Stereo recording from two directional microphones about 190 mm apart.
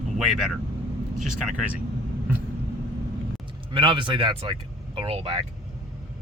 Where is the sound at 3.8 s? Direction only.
25° right (ahead or behind).